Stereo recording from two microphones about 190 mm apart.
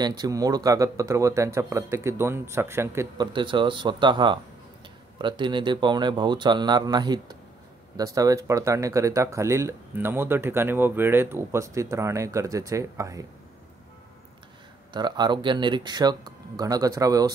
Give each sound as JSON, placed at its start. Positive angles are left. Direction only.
{"t": 0.0, "sound": "speech", "side_deg": -20}
{"t": 3.3, "sound": "speech", "side_deg": -25}
{"t": 14.9, "sound": "speech", "side_deg": -20}